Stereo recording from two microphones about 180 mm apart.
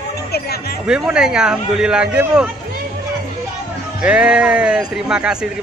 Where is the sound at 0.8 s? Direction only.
5° right (ahead or behind).